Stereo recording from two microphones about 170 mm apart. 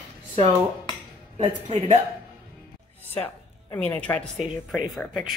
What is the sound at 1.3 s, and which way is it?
Speech, 40° right (ahead or behind).